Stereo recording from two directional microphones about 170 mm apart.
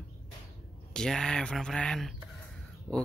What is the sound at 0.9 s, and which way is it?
Speech, 5° left (ahead or behind).